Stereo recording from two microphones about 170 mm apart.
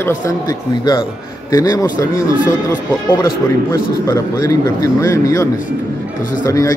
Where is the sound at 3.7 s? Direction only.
15° left (ahead or behind).